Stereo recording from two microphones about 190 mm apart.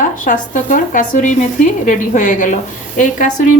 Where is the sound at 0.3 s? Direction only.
40° left (ahead or behind).